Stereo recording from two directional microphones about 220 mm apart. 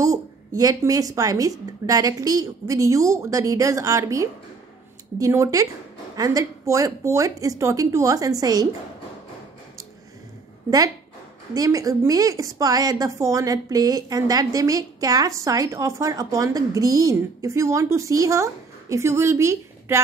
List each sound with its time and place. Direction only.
0.0 s a woman's voice: 15° right (ahead or behind)
11.5 s a woman's voice: 15° right (ahead or behind)